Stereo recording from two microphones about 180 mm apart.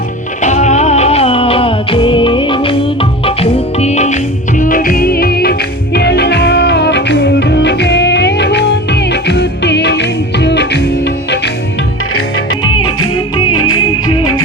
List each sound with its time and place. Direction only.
0.4 s music: 40° left (ahead or behind); by 11.5 s 70° left (ahead or behind)